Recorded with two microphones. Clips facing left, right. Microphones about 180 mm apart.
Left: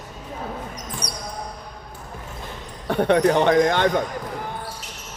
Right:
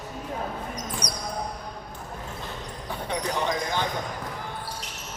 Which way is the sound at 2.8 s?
70° left (ahead or behind).